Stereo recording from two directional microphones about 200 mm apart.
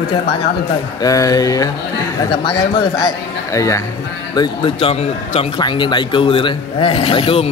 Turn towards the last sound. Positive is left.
turn(degrees=30)  # may be behind; listen again after turning